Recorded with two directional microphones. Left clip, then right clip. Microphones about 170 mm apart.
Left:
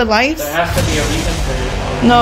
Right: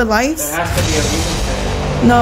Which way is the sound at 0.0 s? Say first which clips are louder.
Left 2 dB; 35° right (ahead or behind).